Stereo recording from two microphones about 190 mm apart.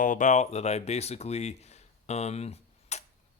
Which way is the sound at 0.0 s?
45° left (ahead or behind).